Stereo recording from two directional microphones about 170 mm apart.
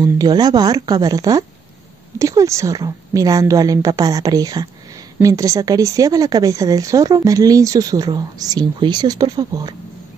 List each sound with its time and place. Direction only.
0.0 s a woman's voice: 25° right (ahead or behind)